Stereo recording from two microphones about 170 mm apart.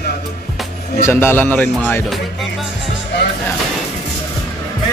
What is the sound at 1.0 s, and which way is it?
A man's voice, 15° left (ahead or behind).